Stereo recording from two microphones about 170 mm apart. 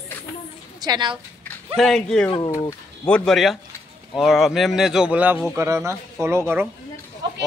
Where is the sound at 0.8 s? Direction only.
25° right (ahead or behind).